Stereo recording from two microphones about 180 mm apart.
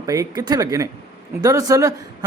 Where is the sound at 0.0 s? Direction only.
20° right (ahead or behind).